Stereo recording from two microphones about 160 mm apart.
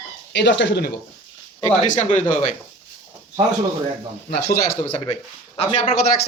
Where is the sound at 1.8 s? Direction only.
50° left (ahead or behind).